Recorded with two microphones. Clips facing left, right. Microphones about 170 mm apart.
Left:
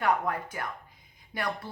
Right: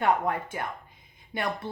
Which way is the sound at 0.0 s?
25° right (ahead or behind).